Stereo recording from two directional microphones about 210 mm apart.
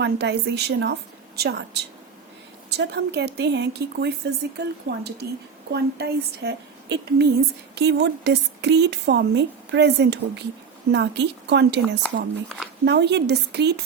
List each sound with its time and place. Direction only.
0.0 s a woman's voice: 55° right (ahead or behind)
2.6 s a woman's voice: 55° right (ahead or behind)
12.0 s speech: centre (ahead or behind)
12.8 s a woman's voice: 55° right (ahead or behind)